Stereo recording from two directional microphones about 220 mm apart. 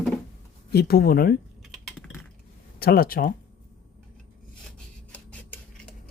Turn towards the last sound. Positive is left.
turn(degrees=5)  # may be behind; listen again after turning